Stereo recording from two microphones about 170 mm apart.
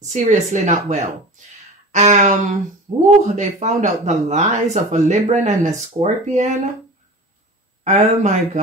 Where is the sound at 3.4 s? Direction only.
45° right (ahead or behind).